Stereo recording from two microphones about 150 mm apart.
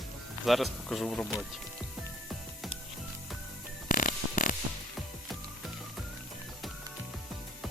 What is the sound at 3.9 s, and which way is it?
Music, 65° left (ahead or behind).